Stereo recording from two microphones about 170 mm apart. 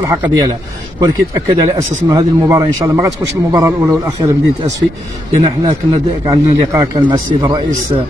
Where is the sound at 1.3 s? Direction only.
20° right (ahead or behind).